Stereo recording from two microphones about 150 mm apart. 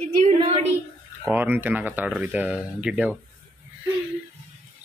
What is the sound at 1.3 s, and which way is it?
Speech, 10° right (ahead or behind).